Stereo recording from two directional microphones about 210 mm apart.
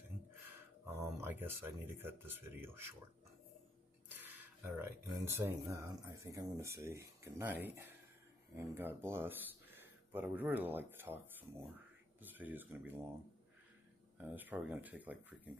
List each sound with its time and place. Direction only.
0.5 s speech: 10° right (ahead or behind)
4.1 s speech: 10° right (ahead or behind)
14.1 s speech: 10° right (ahead or behind)